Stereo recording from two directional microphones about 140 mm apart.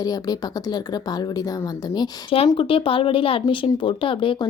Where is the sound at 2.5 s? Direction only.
40° left (ahead or behind).